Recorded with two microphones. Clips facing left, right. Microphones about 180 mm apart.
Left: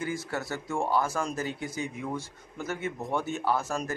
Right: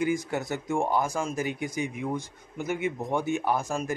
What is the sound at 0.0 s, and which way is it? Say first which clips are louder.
Speech: right 5 dB; 15° right (ahead or behind).